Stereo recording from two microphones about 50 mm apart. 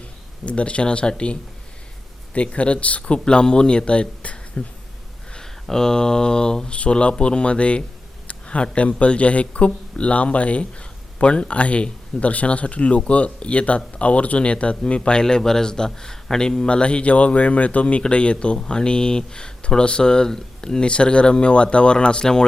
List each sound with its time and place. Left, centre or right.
0.4 s speech: left
5.3 s speech: centre